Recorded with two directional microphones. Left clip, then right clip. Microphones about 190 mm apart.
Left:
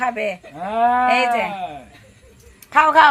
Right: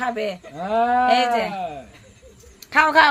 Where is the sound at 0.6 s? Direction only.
30° right (ahead or behind).